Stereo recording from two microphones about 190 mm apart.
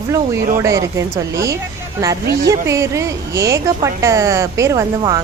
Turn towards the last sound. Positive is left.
turn(degrees=-15)  # may be behind; listen again after turning